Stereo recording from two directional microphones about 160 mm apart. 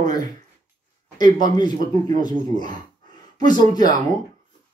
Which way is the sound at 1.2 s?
25° left (ahead or behind).